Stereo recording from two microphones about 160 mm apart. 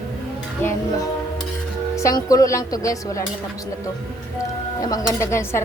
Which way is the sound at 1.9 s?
20° left (ahead or behind).